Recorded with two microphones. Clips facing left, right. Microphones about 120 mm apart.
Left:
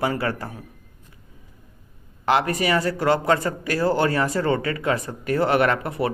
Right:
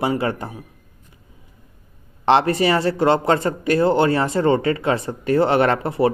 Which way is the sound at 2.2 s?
30° right (ahead or behind).